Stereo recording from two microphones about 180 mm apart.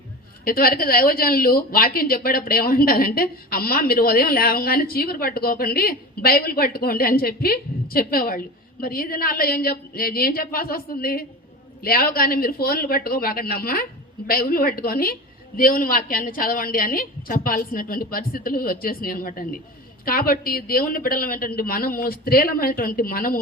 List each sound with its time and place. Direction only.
0.4 s a woman's voice: 55° left (ahead or behind)